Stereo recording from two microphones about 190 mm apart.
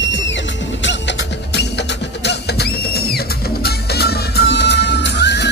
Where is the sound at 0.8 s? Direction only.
65° left (ahead or behind).